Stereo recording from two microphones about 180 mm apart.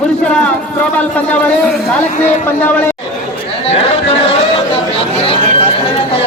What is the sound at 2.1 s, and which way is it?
Speech, 45° left (ahead or behind).